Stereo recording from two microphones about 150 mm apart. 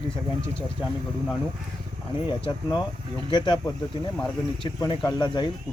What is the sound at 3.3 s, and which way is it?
Speech, 30° left (ahead or behind).